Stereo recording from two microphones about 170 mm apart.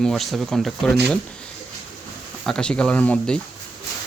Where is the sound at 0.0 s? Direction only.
Centre (ahead or behind).